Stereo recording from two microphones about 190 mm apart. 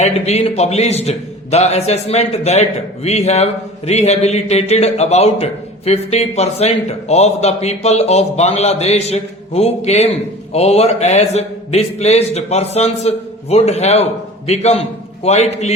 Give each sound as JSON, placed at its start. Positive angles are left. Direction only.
{"t": 0.0, "sound": "a man's voice", "side_deg": 35}